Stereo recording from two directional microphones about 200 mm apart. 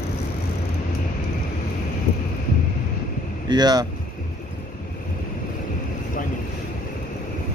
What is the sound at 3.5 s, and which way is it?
Speech, 20° right (ahead or behind).